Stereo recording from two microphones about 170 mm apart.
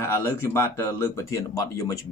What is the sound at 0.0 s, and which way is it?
Speech, 15° left (ahead or behind).